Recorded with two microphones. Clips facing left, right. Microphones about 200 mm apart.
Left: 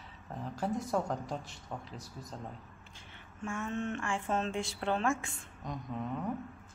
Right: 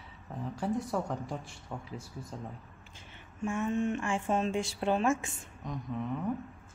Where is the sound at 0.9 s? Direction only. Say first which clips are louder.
Even; 5° right (ahead or behind).